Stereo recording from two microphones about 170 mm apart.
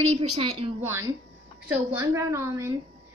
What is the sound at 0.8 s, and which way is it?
A child's voice, 15° right (ahead or behind).